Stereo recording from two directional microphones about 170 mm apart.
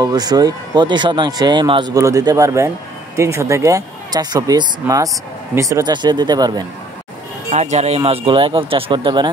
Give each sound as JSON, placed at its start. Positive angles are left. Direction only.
{"t": 0.0, "sound": "speech", "side_deg": -25}
{"t": 7.5, "sound": "speech", "side_deg": -40}
{"t": 8.0, "sound": "speech", "side_deg": -30}